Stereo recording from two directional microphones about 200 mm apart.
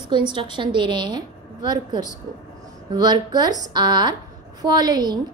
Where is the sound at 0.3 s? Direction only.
25° right (ahead or behind).